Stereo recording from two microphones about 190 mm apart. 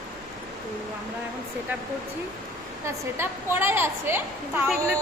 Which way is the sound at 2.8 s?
10° right (ahead or behind).